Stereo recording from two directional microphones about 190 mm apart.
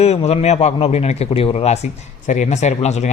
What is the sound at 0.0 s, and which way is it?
Speech, 35° left (ahead or behind).